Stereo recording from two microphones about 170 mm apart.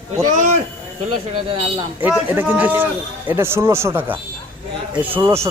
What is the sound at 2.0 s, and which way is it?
A man's voice, 10° right (ahead or behind).